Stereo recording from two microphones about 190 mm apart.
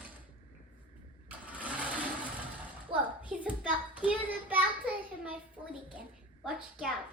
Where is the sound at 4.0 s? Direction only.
5° right (ahead or behind).